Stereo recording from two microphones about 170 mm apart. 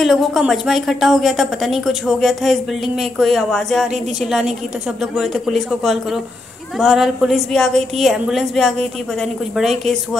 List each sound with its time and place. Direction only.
0.0 s a woman's voice: centre (ahead or behind)